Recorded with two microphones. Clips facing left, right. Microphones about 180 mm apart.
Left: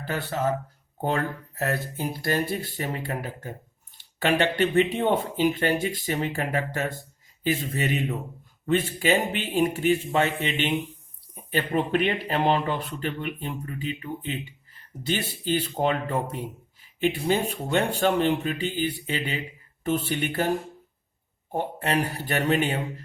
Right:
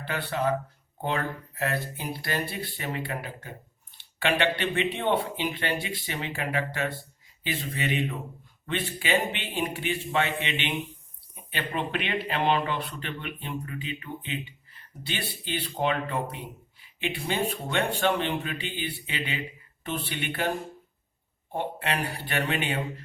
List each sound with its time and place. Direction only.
0.0 s a man's voice: 45° left (ahead or behind)
21.5 s speech: 40° left (ahead or behind)